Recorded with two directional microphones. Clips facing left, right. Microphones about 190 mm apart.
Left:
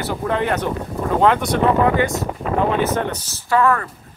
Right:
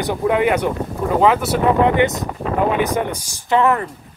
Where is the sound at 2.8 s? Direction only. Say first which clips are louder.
Even; 15° right (ahead or behind).